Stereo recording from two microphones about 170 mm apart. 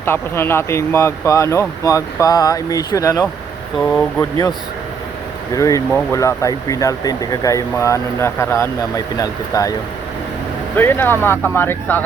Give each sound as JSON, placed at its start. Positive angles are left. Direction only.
{"t": 0.0, "sound": "speech", "side_deg": 15}
{"t": 5.5, "sound": "speech", "side_deg": 20}
{"t": 10.8, "sound": "speech", "side_deg": 10}